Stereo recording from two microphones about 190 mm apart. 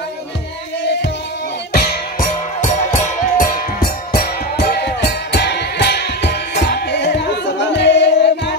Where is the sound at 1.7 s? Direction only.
50° left (ahead or behind).